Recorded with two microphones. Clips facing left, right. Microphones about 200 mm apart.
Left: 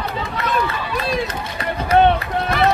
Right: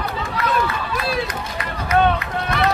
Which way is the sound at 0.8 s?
Centre (ahead or behind).